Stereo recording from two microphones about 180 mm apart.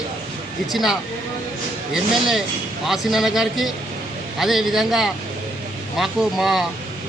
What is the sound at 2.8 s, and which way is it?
A man's voice, centre (ahead or behind).